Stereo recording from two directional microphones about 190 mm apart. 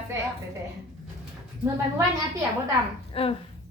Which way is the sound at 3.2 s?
30° left (ahead or behind).